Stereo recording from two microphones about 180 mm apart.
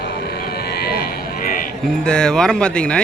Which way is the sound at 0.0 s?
65° left (ahead or behind).